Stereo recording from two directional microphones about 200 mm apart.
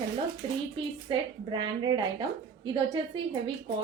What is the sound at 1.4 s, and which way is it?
Speech, 20° right (ahead or behind).